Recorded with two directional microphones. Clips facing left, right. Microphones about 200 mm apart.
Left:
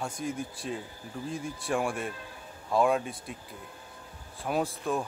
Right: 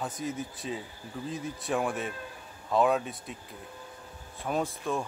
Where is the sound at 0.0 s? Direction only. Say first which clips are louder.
Even; 5° right (ahead or behind).